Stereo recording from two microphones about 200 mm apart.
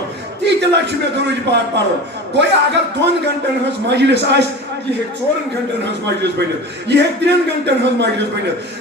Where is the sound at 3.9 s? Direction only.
60° right (ahead or behind).